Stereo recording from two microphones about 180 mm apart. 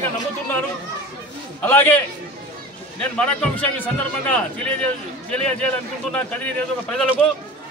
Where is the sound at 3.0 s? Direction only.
5° left (ahead or behind).